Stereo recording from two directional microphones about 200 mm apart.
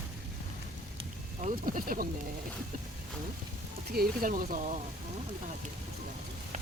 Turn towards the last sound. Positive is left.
turn(degrees=-40)  # may be behind; listen again after turning